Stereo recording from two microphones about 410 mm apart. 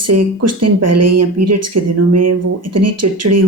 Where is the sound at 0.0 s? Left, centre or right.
Right.